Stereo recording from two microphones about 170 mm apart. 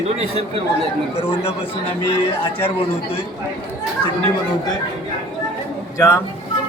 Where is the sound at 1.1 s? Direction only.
35° left (ahead or behind).